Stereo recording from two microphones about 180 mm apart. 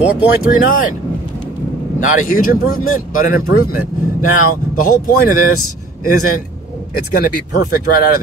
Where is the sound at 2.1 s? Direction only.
50° left (ahead or behind).